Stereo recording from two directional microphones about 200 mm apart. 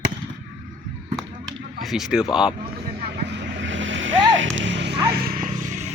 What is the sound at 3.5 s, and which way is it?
Vehicle, 70° right (ahead or behind).